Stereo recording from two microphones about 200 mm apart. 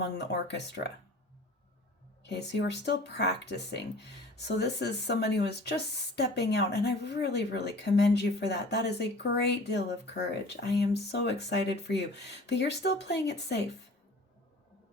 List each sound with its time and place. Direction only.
0.0 s speech: 60° left (ahead or behind)
2.2 s speech: 60° left (ahead or behind)